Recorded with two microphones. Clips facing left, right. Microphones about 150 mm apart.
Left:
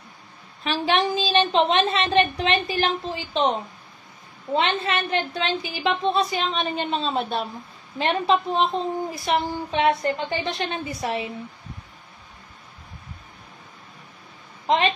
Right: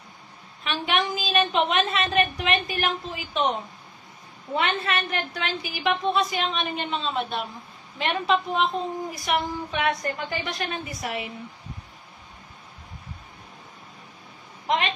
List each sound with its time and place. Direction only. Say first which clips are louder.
0.7 s a woman's voice: left 4 dB; 30° left (ahead or behind)
4.6 s a woman's voice: left 2 dB; 25° left (ahead or behind)